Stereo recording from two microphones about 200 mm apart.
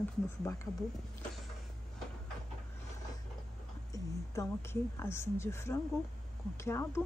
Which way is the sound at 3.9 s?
15° left (ahead or behind).